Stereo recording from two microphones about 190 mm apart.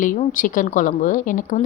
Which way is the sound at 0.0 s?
45° left (ahead or behind).